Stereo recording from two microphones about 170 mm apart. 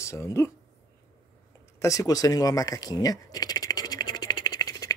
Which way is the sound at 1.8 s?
20° left (ahead or behind).